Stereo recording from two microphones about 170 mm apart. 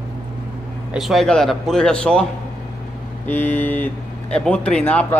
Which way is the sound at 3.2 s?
10° left (ahead or behind).